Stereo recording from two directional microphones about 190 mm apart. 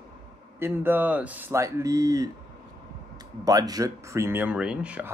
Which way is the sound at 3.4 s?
20° right (ahead or behind).